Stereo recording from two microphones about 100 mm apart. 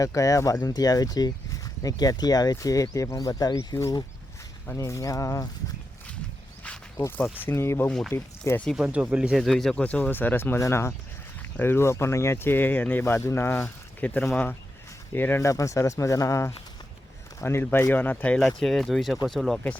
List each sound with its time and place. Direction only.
0.0 s speech: 35° left (ahead or behind)
7.4 s speech: 25° left (ahead or behind)
7.9 s speech: 5° left (ahead or behind)
8.1 s speech: 25° left (ahead or behind)
8.7 s speech: 10° right (ahead or behind)
9.4 s speech: 5° left (ahead or behind); by 15.4 s 20° left (ahead or behind)
15.4 s speech: 30° left (ahead or behind)
17.4 s speech: 20° left (ahead or behind); by 19.5 s centre (ahead or behind)